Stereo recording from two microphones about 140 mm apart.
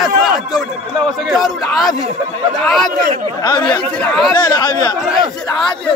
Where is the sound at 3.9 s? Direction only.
5° left (ahead or behind).